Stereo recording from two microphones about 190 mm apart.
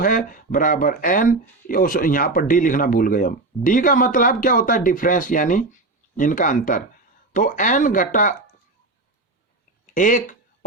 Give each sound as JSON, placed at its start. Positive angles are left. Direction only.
{"t": 0.0, "sound": "speech", "side_deg": 45}
{"t": 9.8, "sound": "speech", "side_deg": 40}